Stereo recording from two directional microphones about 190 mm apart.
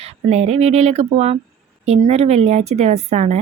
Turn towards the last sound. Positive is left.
turn(degrees=-35)  # may be behind; listen again after turning